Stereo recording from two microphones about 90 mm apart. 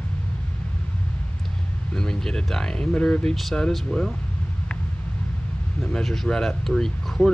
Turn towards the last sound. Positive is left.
turn(degrees=5)  # may be behind; listen again after turning